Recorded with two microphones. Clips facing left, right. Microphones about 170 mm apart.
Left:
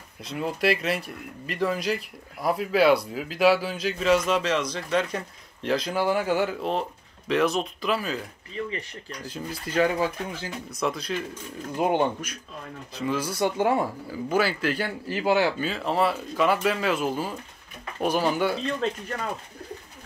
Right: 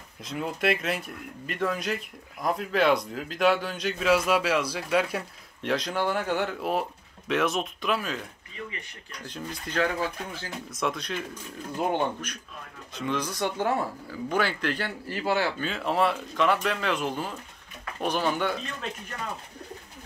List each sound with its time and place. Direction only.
0.2 s speech: centre (ahead or behind)
6.6 s speech: 5° right (ahead or behind)
9.2 s speech: 5° left (ahead or behind)
10.7 s speech: centre (ahead or behind)
11.8 s speech: 15° left (ahead or behind)
15.7 s speech: centre (ahead or behind)
18.8 s speech: 30° left (ahead or behind)